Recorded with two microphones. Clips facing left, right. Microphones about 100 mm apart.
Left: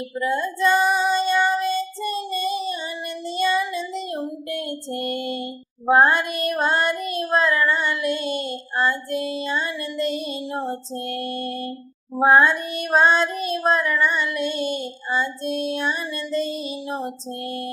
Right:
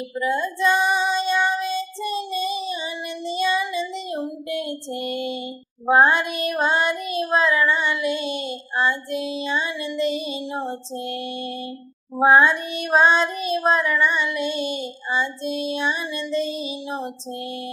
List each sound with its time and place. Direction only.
0.2 s female singing: centre (ahead or behind)
0.9 s child singing: 5° right (ahead or behind)
2.3 s a sound: 50° left (ahead or behind)
3.3 s child singing: 5° right (ahead or behind)
4.9 s female singing: 50° left (ahead or behind)
5.8 s child singing: centre (ahead or behind)
8.2 s child singing: 50° left (ahead or behind)
9.8 s female singing: 5° right (ahead or behind)
14.6 s female singing: 50° left (ahead or behind)
15.1 s female singing: 5° right (ahead or behind)